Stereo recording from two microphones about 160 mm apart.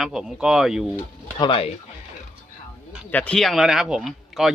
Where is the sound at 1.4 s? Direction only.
35° left (ahead or behind).